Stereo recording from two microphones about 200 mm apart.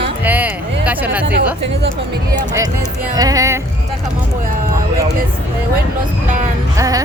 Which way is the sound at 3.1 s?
20° right (ahead or behind).